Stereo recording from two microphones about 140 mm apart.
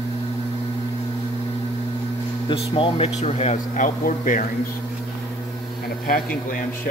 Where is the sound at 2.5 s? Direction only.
40° left (ahead or behind); by 4.4 s 65° left (ahead or behind).